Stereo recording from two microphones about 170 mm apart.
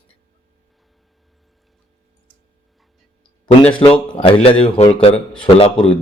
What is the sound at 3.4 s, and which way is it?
Speech, 35° left (ahead or behind).